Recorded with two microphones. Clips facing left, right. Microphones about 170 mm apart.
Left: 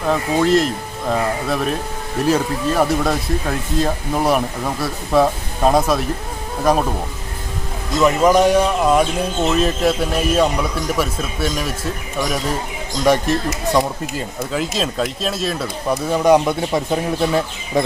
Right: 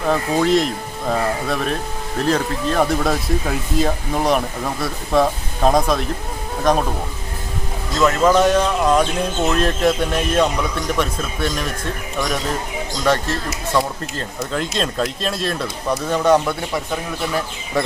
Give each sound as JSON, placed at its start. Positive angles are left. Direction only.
{"t": 0.0, "sound": "speech", "side_deg": 0}
{"t": 8.0, "sound": "speech", "side_deg": 15}
{"t": 13.1, "sound": "speech", "side_deg": 15}
{"t": 16.7, "sound": "speech", "side_deg": 25}